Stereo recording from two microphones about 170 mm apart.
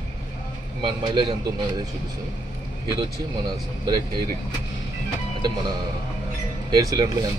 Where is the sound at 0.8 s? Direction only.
25° right (ahead or behind).